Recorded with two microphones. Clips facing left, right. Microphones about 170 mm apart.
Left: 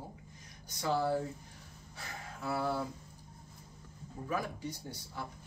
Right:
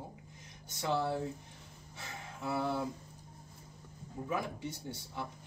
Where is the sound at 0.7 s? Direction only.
25° right (ahead or behind).